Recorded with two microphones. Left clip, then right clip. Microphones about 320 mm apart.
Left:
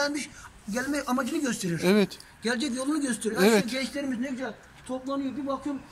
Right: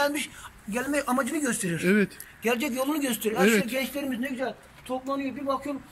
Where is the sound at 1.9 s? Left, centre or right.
Centre.